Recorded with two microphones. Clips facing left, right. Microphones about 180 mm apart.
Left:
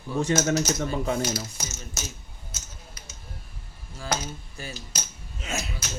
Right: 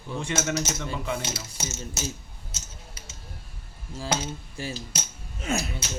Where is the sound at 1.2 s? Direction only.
25° right (ahead or behind).